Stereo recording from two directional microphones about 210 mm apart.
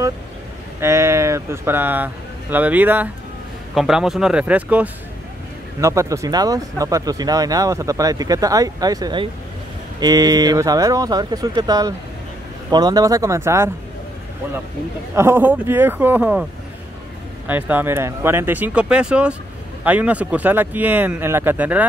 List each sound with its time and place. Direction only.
0.7 s speech: 15° right (ahead or behind)
15.1 s speech: 10° right (ahead or behind)
17.5 s speech: 10° right (ahead or behind)